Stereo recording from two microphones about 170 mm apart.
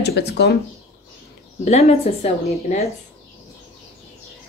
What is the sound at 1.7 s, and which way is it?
Speech, 40° left (ahead or behind).